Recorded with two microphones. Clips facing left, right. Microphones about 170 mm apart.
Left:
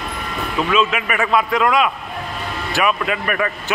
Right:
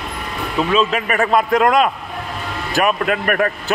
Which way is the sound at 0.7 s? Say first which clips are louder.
Right 1 dB; 40° right (ahead or behind).